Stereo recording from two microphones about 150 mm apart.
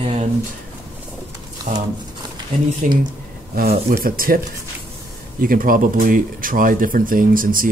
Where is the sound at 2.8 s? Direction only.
60° right (ahead or behind).